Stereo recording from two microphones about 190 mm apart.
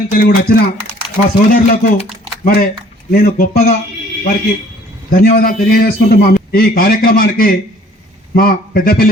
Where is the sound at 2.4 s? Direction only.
50° left (ahead or behind).